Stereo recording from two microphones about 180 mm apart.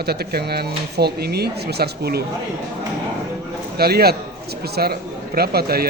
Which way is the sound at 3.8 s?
60° right (ahead or behind).